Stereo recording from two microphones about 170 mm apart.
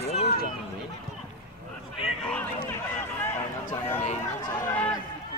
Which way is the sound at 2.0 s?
5° left (ahead or behind).